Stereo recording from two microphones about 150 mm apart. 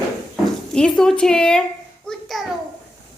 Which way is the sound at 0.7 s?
5° left (ahead or behind).